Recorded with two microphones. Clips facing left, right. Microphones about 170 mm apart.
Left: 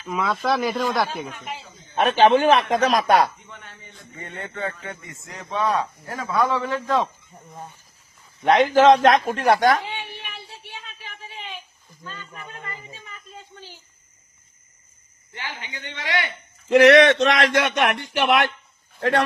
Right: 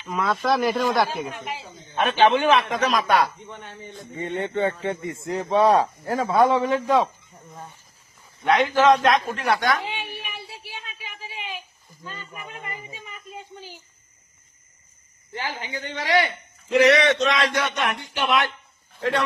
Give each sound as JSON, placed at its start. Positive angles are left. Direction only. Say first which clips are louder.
{"t": 0.0, "sound": "speech", "louder": "even", "side_deg": 0}
{"t": 2.0, "sound": "a man's voice", "louder": "left 2 dB", "side_deg": 45}
{"t": 3.5, "sound": "speech", "louder": "right 6 dB", "side_deg": -25}
{"t": 8.8, "sound": "a man's voice", "louder": "left 3 dB", "side_deg": 40}
{"t": 9.8, "sound": "a sound", "louder": "right 1 dB", "side_deg": -10}
{"t": 15.4, "sound": "speech", "louder": "right 5 dB", "side_deg": -35}
{"t": 16.6, "sound": "a man's voice", "louder": "left 5 dB", "side_deg": 60}
{"t": 17.5, "sound": "a man's voice", "louder": "left 4 dB", "side_deg": 70}
{"t": 18.9, "sound": "a man's voice", "louder": "left 3 dB", "side_deg": 55}